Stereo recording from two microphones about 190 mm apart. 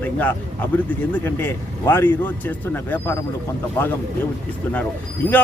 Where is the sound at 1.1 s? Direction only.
10° left (ahead or behind).